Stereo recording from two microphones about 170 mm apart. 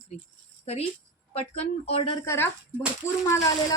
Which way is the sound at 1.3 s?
35° left (ahead or behind).